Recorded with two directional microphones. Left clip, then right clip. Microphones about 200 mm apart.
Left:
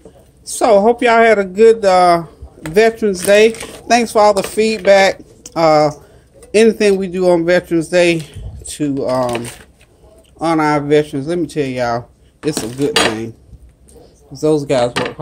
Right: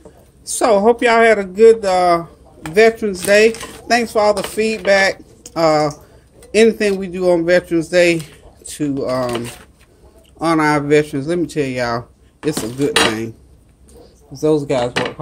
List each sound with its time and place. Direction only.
0.5 s speech: 5° left (ahead or behind)
10.4 s a man's voice: centre (ahead or behind)
14.4 s speech: 10° left (ahead or behind)